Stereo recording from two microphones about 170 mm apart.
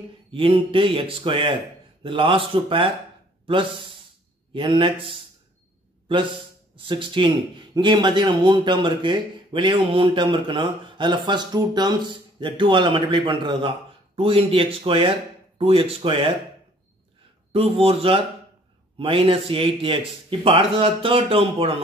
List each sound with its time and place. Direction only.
0.3 s a man's voice: 30° right (ahead or behind)
6.7 s a man's voice: 30° right (ahead or behind)
17.5 s a man's voice: 35° right (ahead or behind)